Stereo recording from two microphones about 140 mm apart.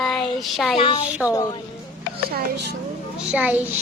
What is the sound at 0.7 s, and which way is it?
Speech, 40° left (ahead or behind).